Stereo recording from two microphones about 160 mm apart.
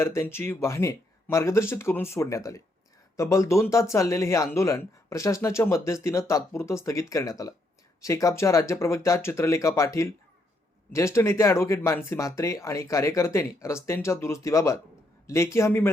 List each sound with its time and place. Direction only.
0.0 s speech: 15° left (ahead or behind)